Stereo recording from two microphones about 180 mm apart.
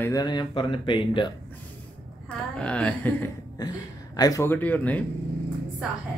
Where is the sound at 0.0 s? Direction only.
20° left (ahead or behind).